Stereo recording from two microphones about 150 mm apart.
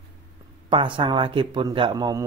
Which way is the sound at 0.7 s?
35° right (ahead or behind).